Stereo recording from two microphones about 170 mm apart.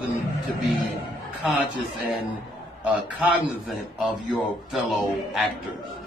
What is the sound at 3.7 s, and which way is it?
A man's voice, centre (ahead or behind).